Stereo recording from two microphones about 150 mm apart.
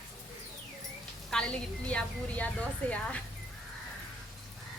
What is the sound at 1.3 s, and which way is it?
A woman's voice, 5° left (ahead or behind).